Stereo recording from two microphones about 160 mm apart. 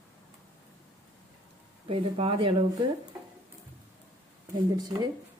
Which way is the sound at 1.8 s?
35° right (ahead or behind).